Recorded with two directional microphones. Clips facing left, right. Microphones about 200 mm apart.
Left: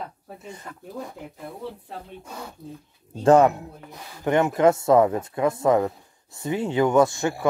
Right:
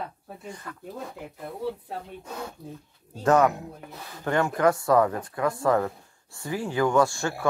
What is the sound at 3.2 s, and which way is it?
Speech, 30° left (ahead or behind).